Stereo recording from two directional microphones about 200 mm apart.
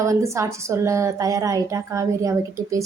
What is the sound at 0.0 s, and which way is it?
A woman's voice, 15° right (ahead or behind).